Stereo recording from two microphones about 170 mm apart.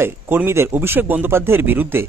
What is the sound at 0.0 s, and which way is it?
A man's voice, 15° right (ahead or behind).